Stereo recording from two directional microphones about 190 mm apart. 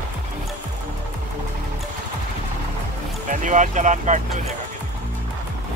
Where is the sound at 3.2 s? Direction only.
40° right (ahead or behind).